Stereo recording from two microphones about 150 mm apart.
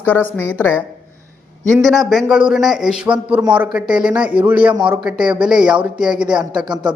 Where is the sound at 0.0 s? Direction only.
10° left (ahead or behind).